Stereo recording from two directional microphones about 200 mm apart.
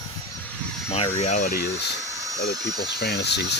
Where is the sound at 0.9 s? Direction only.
30° left (ahead or behind); by 1.7 s 50° left (ahead or behind).